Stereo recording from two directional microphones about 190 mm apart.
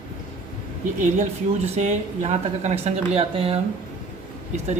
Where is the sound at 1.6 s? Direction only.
35° right (ahead or behind).